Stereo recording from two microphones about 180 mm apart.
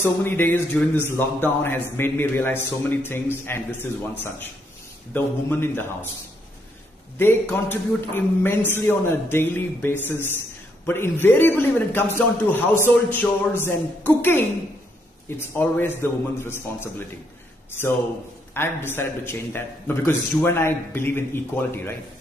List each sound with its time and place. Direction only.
0.0 s a man's voice: 10° left (ahead or behind)
5.1 s a man's voice: 10° left (ahead or behind)
7.2 s a man's voice: 10° left (ahead or behind)
18.5 s a man's voice: 10° left (ahead or behind)